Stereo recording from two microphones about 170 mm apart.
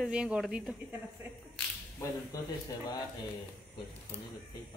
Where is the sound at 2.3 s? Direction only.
20° left (ahead or behind).